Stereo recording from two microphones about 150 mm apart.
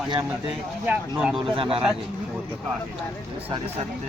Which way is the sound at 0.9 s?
10° right (ahead or behind).